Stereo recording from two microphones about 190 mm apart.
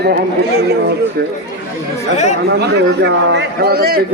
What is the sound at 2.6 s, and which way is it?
A man's voice, 60° right (ahead or behind).